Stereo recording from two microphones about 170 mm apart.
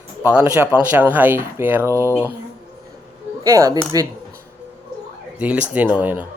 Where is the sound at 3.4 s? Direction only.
20° right (ahead or behind).